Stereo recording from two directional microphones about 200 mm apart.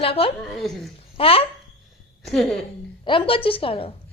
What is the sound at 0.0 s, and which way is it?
Speech, 30° left (ahead or behind).